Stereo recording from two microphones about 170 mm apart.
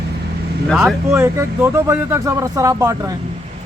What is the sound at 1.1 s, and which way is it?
Speech, 15° right (ahead or behind).